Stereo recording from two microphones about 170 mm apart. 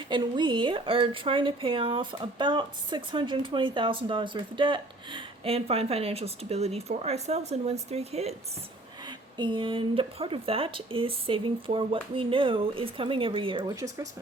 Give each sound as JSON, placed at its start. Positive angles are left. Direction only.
{"t": 0.1, "sound": "a woman's voice", "side_deg": -25}
{"t": 9.0, "sound": "a woman's voice", "side_deg": -25}
{"t": 13.7, "sound": "speech", "side_deg": -20}